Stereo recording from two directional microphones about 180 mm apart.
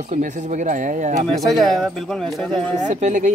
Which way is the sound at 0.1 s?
40° right (ahead or behind).